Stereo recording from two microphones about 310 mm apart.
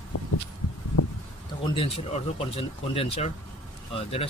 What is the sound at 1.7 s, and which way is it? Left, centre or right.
Speech, centre.